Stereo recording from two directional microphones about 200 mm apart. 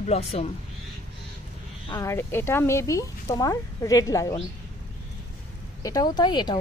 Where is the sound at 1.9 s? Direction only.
15° left (ahead or behind).